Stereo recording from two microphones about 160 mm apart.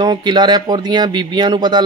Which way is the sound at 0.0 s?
25° right (ahead or behind).